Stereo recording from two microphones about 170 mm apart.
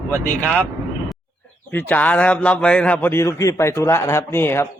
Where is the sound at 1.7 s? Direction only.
10° left (ahead or behind).